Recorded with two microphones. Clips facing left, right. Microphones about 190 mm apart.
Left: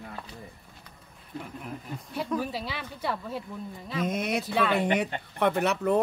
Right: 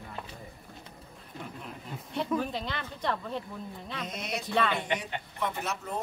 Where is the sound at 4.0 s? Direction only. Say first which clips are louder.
Left 9 dB; 55° left (ahead or behind).